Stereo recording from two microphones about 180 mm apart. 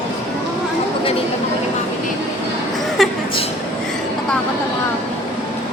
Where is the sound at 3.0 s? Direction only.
Centre (ahead or behind).